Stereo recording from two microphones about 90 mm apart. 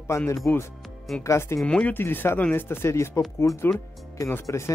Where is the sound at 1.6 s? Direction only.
15° left (ahead or behind).